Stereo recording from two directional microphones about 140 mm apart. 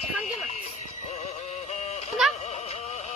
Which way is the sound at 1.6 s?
50° left (ahead or behind).